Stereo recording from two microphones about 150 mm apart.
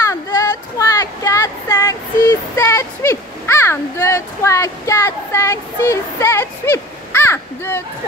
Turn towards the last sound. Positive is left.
turn(degrees=15)  # may be behind; listen again after turning